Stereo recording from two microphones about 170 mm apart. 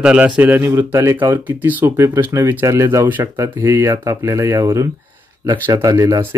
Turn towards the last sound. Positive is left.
turn(degrees=-20)  # may be behind; listen again after turning